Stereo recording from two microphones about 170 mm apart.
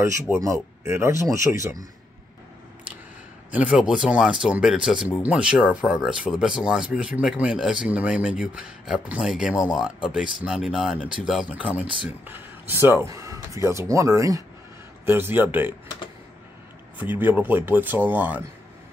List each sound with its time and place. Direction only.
0.0 s speech: 15° right (ahead or behind)
3.5 s speech: 5° right (ahead or behind)
17.0 s speech: 10° right (ahead or behind)